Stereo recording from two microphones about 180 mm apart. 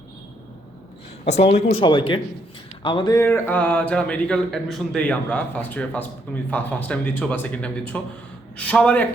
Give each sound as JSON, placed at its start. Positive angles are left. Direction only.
{"t": 1.2, "sound": "speech", "side_deg": 35}
{"t": 1.7, "sound": "speech", "side_deg": 25}